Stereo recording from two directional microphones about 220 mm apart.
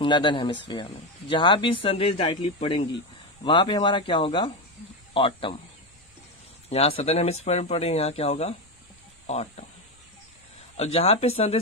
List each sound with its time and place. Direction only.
0.0 s speech: 20° left (ahead or behind)
6.7 s speech: 25° left (ahead or behind)
10.8 s speech: 25° left (ahead or behind)